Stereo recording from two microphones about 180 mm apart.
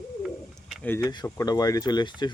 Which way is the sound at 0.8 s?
10° left (ahead or behind).